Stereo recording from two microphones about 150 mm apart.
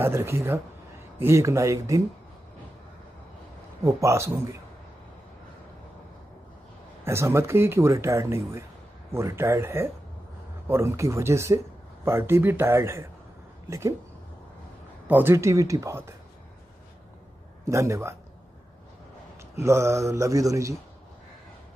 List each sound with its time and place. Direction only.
0.0 s speech: 15° right (ahead or behind)
3.8 s speech: 20° right (ahead or behind)
7.1 s speech: 15° right (ahead or behind)
15.0 s speech: 15° right (ahead or behind)
17.6 s speech: 20° right (ahead or behind)
19.6 s speech: 20° right (ahead or behind)